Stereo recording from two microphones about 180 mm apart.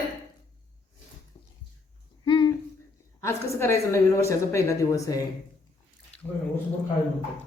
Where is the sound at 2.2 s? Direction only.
25° left (ahead or behind).